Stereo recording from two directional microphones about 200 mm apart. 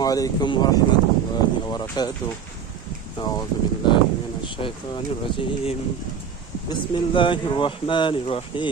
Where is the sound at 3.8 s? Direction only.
20° left (ahead or behind).